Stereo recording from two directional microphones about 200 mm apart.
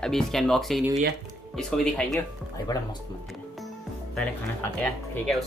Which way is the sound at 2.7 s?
20° left (ahead or behind).